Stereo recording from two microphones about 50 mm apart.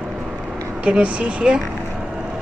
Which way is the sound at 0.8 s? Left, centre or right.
Right.